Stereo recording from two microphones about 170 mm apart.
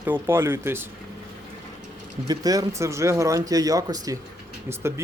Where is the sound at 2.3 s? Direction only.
20° right (ahead or behind).